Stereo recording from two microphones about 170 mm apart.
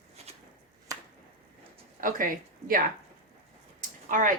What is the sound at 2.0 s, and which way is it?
Speech, 55° right (ahead or behind).